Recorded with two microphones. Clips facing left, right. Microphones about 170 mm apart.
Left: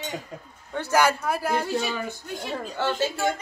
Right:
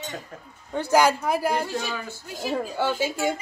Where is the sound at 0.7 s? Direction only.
10° right (ahead or behind).